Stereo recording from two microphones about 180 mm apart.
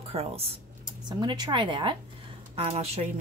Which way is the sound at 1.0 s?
25° right (ahead or behind).